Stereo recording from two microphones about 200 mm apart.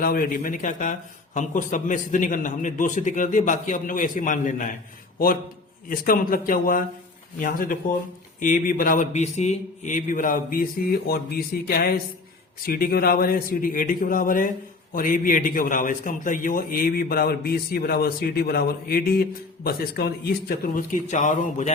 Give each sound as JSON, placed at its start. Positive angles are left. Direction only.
{"t": 0.0, "sound": "a man's voice", "side_deg": 45}
{"t": 5.9, "sound": "a man's voice", "side_deg": 45}